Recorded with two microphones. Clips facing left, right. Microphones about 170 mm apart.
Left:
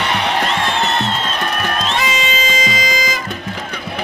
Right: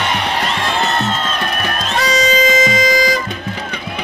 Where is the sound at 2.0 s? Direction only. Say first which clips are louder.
Right 5 dB; 40° right (ahead or behind).